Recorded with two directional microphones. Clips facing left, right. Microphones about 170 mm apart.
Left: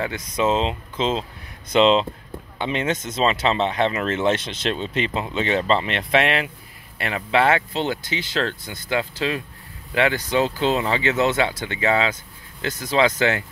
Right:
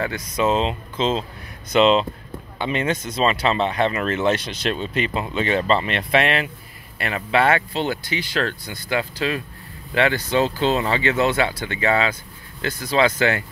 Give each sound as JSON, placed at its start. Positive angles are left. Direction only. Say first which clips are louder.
{"t": 0.0, "sound": "speech", "louder": "right 1 dB", "side_deg": 20}